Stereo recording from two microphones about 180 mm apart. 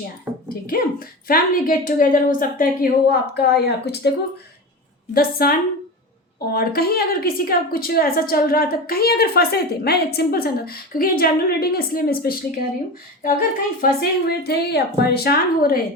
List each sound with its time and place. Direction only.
0.4 s a woman's voice: 55° left (ahead or behind)
5.1 s a woman's voice: 55° left (ahead or behind)
13.8 s a woman's voice: 60° left (ahead or behind)